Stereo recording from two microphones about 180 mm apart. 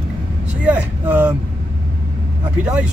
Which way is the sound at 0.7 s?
10° right (ahead or behind).